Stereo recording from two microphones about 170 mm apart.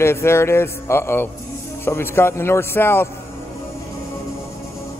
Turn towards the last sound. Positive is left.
turn(degrees=15)  # may be behind; listen again after turning